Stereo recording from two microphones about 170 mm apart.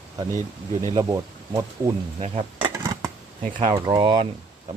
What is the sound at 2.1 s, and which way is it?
Speech, 35° right (ahead or behind).